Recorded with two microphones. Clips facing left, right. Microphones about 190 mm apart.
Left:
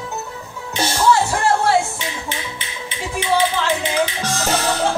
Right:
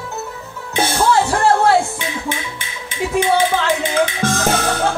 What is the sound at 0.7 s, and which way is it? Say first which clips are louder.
Music: right 1 dB; 55° right (ahead or behind).